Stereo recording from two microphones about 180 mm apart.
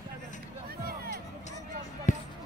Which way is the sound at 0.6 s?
55° right (ahead or behind).